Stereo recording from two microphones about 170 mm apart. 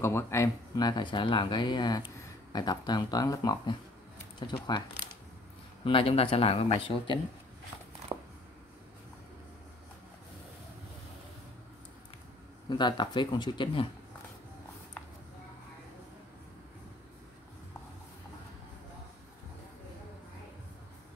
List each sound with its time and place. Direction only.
0.0 s speech: 15° left (ahead or behind)
5.9 s speech: 30° left (ahead or behind)
8.1 s a sound: 20° right (ahead or behind)
12.6 s speech: 25° left (ahead or behind)